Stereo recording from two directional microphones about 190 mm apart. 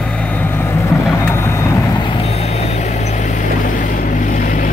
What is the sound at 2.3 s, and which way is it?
Vehicle, 35° left (ahead or behind).